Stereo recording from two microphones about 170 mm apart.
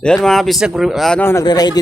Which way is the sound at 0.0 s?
5° left (ahead or behind).